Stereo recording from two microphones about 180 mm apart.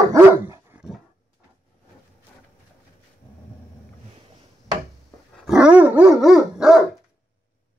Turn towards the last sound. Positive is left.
turn(degrees=0)  # may be behind; listen again after turning